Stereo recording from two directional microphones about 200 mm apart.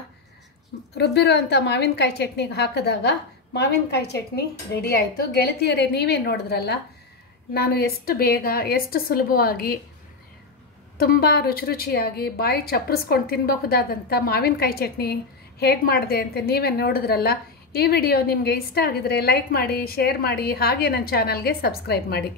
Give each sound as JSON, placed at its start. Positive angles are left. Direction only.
{"t": 0.9, "sound": "a woman's voice", "side_deg": 55}
{"t": 11.0, "sound": "a woman's voice", "side_deg": 50}